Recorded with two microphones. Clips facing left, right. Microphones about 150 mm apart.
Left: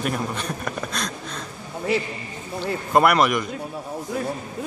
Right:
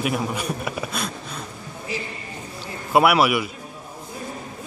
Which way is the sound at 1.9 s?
65° left (ahead or behind).